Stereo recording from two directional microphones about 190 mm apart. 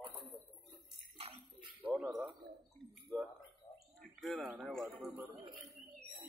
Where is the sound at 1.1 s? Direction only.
30° right (ahead or behind).